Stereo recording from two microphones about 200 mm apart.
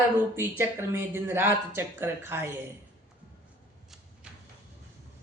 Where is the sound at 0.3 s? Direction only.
10° right (ahead or behind).